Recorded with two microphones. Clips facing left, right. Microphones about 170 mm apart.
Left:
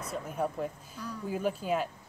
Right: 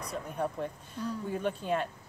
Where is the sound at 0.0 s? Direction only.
5° left (ahead or behind).